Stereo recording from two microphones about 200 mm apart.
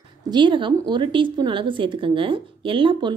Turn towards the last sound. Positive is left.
turn(degrees=-25)  # may be behind; listen again after turning